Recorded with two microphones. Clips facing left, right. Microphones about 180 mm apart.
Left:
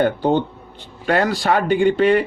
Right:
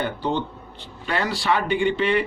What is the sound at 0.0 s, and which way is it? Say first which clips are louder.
A man's voice: left 8 dB; 50° left (ahead or behind).